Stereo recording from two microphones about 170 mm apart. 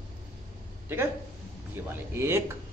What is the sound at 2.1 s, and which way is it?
Speech, 15° right (ahead or behind).